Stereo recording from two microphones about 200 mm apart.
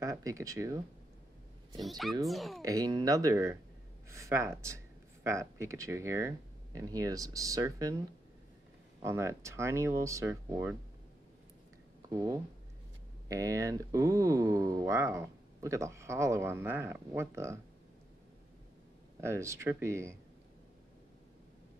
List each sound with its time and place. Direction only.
0.0 s speech: 15° right (ahead or behind)
1.8 s speech: centre (ahead or behind)
2.6 s speech: 20° right (ahead or behind)
9.0 s speech: 15° right (ahead or behind)
12.1 s speech: 15° right (ahead or behind)
19.2 s speech: 15° right (ahead or behind)